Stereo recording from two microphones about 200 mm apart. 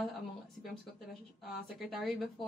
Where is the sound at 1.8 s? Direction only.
Centre (ahead or behind).